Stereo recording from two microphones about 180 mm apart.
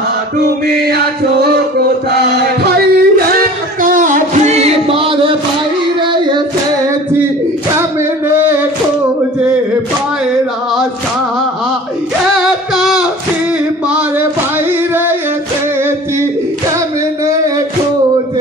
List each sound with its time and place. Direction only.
2.3 s music: 60° right (ahead or behind); by 5.3 s 30° right (ahead or behind)
12.4 s music: centre (ahead or behind)
13.8 s a sound: 5° right (ahead or behind)
14.7 s singing: 10° right (ahead or behind)